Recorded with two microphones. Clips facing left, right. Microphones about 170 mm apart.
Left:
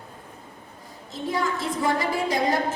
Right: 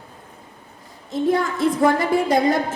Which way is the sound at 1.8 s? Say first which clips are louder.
Right 6 dB; 55° right (ahead or behind).